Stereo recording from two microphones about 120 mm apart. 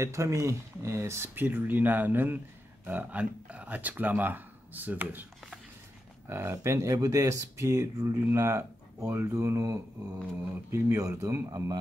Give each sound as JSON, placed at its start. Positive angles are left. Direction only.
{"t": 0.0, "sound": "speech", "side_deg": -25}
{"t": 6.2, "sound": "speech", "side_deg": -20}